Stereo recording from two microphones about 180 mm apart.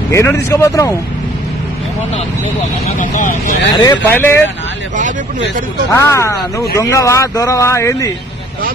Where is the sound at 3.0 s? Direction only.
45° left (ahead or behind).